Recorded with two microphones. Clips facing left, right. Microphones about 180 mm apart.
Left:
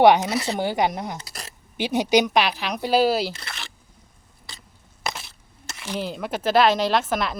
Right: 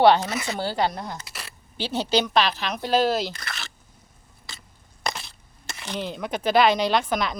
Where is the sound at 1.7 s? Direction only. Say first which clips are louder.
Left 4 dB; 15° left (ahead or behind).